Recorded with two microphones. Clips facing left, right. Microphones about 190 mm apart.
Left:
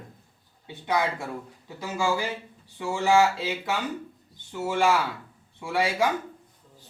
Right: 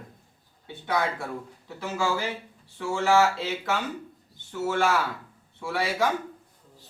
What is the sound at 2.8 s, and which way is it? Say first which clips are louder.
Speech: left 1 dB; 15° left (ahead or behind).